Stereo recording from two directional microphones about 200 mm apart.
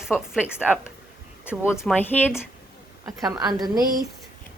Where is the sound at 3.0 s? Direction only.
20° right (ahead or behind).